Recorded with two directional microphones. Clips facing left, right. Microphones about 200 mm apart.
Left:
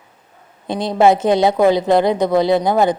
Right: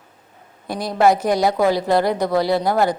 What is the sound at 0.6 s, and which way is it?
A woman's voice, 25° left (ahead or behind).